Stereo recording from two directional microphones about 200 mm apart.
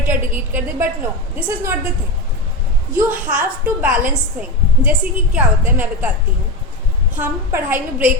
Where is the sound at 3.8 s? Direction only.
40° right (ahead or behind).